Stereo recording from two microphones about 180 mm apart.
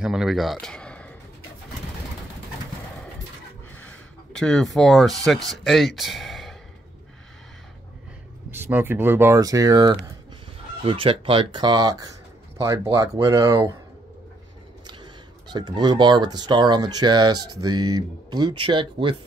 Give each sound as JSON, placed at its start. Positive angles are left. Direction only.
{"t": 0.0, "sound": "speech", "side_deg": -5}
{"t": 3.7, "sound": "a sound", "side_deg": 5}
{"t": 4.7, "sound": "speech", "side_deg": 0}
{"t": 8.5, "sound": "speech", "side_deg": -10}
{"t": 10.8, "sound": "speech", "side_deg": -30}
{"t": 14.9, "sound": "speech", "side_deg": -25}